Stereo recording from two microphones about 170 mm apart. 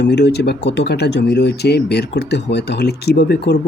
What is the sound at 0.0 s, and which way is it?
Speech, 85° left.